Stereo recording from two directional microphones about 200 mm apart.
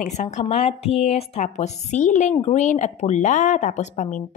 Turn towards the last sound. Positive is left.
turn(degrees=35)  # may be behind; listen again after turning